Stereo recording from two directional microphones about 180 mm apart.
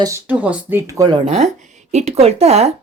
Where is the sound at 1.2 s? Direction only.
35° right (ahead or behind).